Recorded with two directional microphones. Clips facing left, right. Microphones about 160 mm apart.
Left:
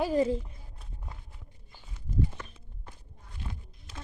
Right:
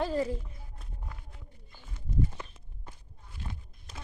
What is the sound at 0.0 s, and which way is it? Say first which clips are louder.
Speech: left 4 dB; 15° left (ahead or behind).